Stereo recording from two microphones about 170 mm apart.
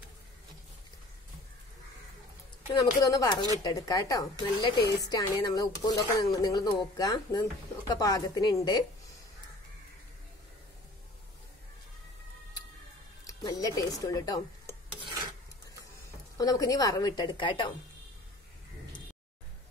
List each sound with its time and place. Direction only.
2.7 s dishes: 20° left (ahead or behind)
13.3 s speech: 20° left (ahead or behind)
16.3 s dishes: 20° left (ahead or behind)